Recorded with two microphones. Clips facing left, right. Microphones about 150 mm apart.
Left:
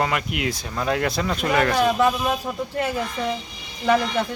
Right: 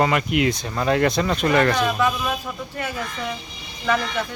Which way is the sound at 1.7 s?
30° left (ahead or behind).